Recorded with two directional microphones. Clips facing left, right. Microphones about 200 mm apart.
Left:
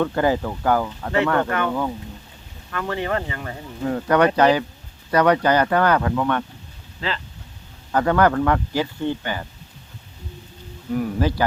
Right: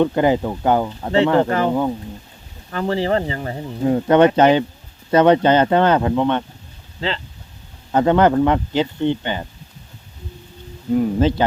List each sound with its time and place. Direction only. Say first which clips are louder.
0.0 s speech: right 4 dB; 20° right (ahead or behind)
10.9 s speech: right 5 dB; 25° right (ahead or behind)